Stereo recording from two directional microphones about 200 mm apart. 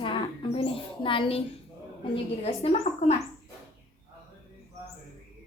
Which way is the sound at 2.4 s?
30° left (ahead or behind).